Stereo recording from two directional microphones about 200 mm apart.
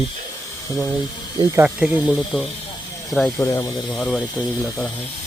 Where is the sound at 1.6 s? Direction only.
5° right (ahead or behind).